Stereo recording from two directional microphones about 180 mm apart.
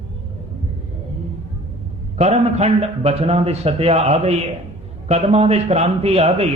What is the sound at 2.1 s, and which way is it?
Speech, 35° right (ahead or behind).